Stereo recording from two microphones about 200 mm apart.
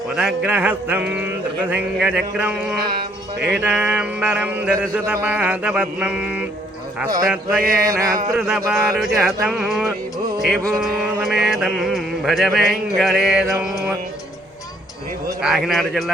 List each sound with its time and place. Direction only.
0.2 s speech: 5° right (ahead or behind)
1.7 s music: 5° right (ahead or behind)
3.4 s speech: 5° right (ahead or behind)
7.6 s mantra: 45° right (ahead or behind)
7.9 s speech: 15° right (ahead or behind)
8.4 s music: 5° right (ahead or behind)
15.4 s music: centre (ahead or behind)